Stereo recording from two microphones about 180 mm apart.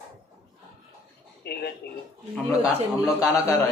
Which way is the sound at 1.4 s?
65° left (ahead or behind).